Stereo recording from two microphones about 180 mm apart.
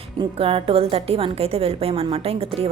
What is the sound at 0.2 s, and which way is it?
A woman's voice, 30° right (ahead or behind).